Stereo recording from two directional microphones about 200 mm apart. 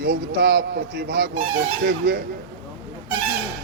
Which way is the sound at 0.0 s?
55° right (ahead or behind).